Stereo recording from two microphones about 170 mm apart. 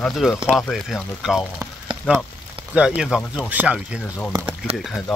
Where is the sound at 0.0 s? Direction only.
Centre (ahead or behind).